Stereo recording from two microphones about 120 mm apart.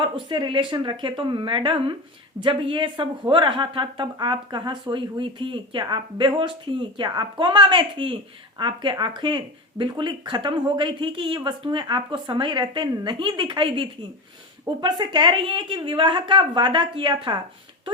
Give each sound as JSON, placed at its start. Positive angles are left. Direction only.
{"t": 0.3, "sound": "a woman's voice", "side_deg": -45}